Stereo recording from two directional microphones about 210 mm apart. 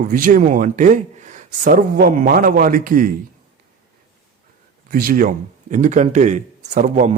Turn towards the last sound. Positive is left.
turn(degrees=-35)  # may be behind; listen again after turning